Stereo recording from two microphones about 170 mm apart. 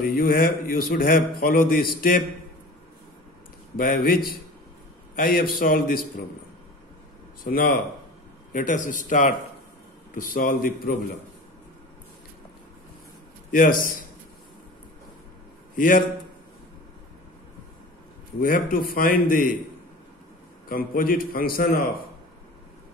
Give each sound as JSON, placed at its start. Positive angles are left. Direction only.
{"t": 0.0, "sound": "a man's voice", "side_deg": 60}
{"t": 3.7, "sound": "a man's voice", "side_deg": 60}
{"t": 7.4, "sound": "a man's voice", "side_deg": 60}
{"t": 13.5, "sound": "speech", "side_deg": 55}
{"t": 15.7, "sound": "a man's voice", "side_deg": 55}
{"t": 18.4, "sound": "a man's voice", "side_deg": 60}
{"t": 20.6, "sound": "a man's voice", "side_deg": 60}